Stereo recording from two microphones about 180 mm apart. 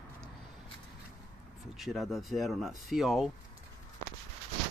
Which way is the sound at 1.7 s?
Centre (ahead or behind).